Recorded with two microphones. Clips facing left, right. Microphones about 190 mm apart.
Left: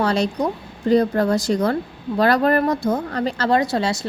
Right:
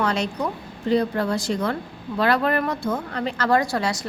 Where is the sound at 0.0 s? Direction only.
35° left (ahead or behind).